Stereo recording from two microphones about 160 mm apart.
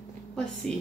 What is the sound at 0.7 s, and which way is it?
Speech, 5° left (ahead or behind).